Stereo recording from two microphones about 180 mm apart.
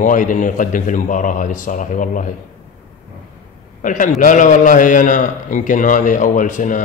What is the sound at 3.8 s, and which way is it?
Speech, 45° left (ahead or behind).